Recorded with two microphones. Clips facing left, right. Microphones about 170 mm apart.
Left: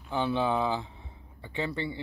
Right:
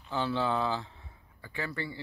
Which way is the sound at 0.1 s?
15° left (ahead or behind).